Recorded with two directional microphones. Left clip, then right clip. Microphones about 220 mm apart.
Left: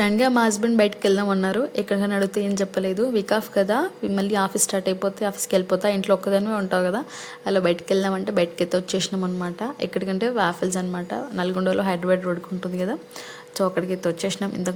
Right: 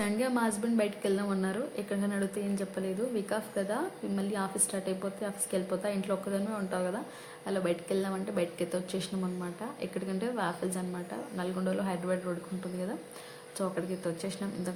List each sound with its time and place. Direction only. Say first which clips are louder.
0.0 s a woman's voice: left 11 dB; 45° left (ahead or behind)
13.6 s speech: left 11 dB; 40° left (ahead or behind)